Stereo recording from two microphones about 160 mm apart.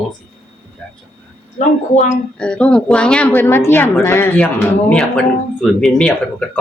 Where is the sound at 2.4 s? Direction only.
5° left (ahead or behind).